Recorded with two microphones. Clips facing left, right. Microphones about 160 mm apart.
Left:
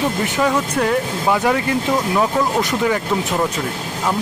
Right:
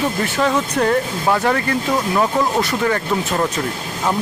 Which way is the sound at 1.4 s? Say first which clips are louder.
Left 1 dB; 15° left (ahead or behind).